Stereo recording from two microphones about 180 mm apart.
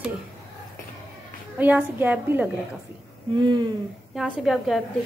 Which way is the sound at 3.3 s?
25° right (ahead or behind).